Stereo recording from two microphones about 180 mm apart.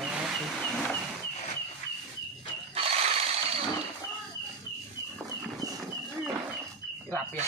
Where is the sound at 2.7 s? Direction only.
35° right (ahead or behind).